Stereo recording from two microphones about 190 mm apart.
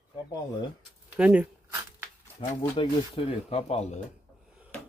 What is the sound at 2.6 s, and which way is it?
Speech, 30° left (ahead or behind).